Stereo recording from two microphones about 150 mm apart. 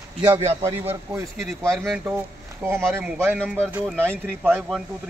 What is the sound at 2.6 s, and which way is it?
Speech, 15° right (ahead or behind).